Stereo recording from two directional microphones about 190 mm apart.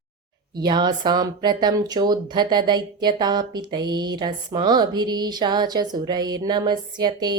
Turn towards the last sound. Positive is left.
turn(degrees=-20)  # may be behind; listen again after turning